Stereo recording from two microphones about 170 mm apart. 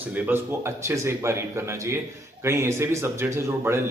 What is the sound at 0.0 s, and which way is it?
A man's voice, 10° right (ahead or behind).